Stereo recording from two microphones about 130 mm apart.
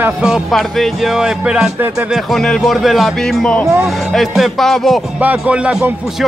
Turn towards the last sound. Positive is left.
turn(degrees=-10)  # may be behind; listen again after turning